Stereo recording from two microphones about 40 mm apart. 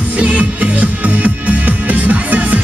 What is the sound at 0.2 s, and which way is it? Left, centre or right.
Music, right.